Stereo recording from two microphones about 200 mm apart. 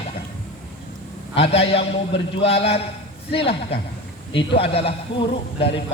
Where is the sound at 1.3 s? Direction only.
30° left (ahead or behind).